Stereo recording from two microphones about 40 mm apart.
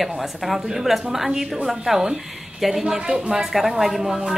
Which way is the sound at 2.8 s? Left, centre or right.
Centre.